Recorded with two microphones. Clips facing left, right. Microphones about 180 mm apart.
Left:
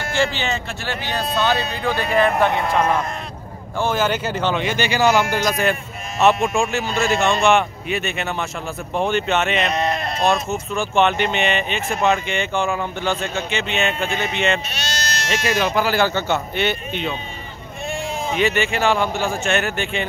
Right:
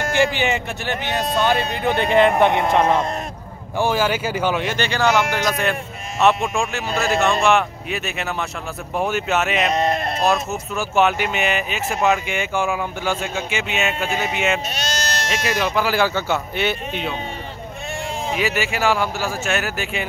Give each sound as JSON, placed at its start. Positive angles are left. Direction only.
{"t": 0.1, "sound": "speech", "side_deg": -15}
{"t": 3.7, "sound": "speech", "side_deg": -10}
{"t": 9.8, "sound": "speech", "side_deg": -45}
{"t": 10.2, "sound": "speech", "side_deg": -5}
{"t": 14.7, "sound": "speech", "side_deg": -45}
{"t": 15.2, "sound": "speech", "side_deg": 0}
{"t": 18.3, "sound": "speech", "side_deg": -5}